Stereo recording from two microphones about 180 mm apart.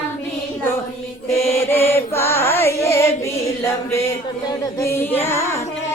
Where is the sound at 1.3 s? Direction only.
15° left (ahead or behind).